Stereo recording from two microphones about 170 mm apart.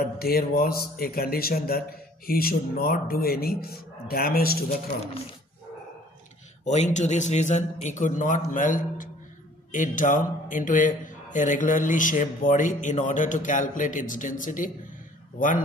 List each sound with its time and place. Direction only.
0.2 s a man's voice: 60° left (ahead or behind)
6.6 s a man's voice: 45° left (ahead or behind)